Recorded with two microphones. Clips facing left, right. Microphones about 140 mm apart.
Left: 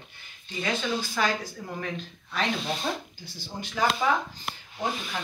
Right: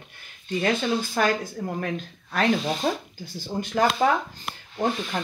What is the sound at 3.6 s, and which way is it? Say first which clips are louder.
Speech: right 4 dB; 45° right (ahead or behind).